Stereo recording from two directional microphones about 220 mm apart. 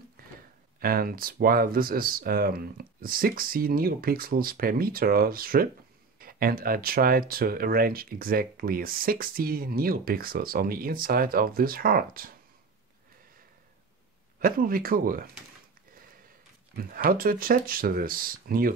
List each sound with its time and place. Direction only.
0.7 s speech: 40° right (ahead or behind)
14.4 s speech: 40° right (ahead or behind)
16.7 s speech: 40° right (ahead or behind)